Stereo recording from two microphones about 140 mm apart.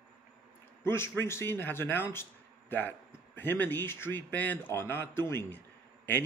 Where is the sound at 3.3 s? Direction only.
15° left (ahead or behind).